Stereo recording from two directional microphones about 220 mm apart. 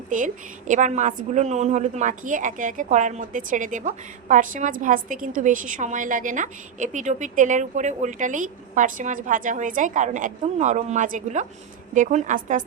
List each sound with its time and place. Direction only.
0.7 s a woman's voice: 35° right (ahead or behind)